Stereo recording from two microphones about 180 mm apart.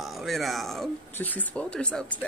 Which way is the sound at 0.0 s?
Centre (ahead or behind).